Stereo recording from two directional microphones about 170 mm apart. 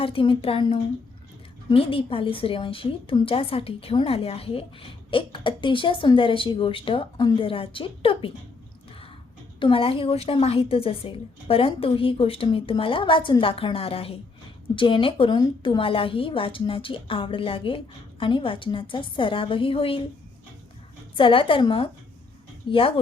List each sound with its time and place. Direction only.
0.0 s a woman's voice: 30° left (ahead or behind)
9.6 s a woman's voice: 30° left (ahead or behind)
21.2 s a woman's voice: 30° left (ahead or behind)